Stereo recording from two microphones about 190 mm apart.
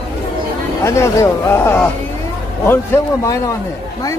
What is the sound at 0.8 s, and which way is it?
A man's voice, 15° left (ahead or behind).